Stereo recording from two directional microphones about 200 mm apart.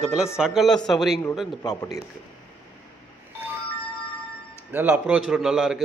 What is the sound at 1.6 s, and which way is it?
Speech, 20° left (ahead or behind).